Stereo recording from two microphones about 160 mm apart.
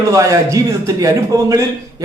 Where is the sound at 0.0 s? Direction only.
20° right (ahead or behind).